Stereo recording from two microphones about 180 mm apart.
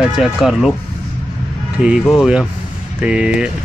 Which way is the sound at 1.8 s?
5° right (ahead or behind).